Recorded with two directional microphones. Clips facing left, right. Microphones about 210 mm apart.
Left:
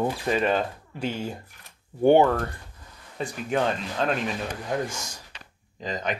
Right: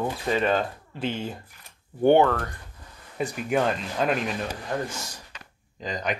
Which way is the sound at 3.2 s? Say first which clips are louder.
Right 1 dB; 10° right (ahead or behind).